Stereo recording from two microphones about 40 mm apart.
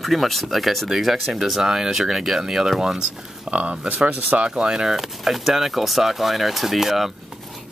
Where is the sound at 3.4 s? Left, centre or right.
Right.